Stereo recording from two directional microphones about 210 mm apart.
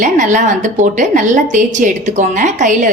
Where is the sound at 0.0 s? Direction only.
35° right (ahead or behind).